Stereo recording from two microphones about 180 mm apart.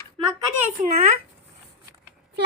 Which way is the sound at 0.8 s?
40° right (ahead or behind).